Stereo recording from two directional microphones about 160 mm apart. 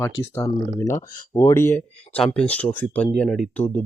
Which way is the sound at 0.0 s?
15° left (ahead or behind).